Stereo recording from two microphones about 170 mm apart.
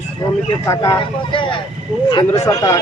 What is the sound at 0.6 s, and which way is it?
A man's voice, 20° left (ahead or behind).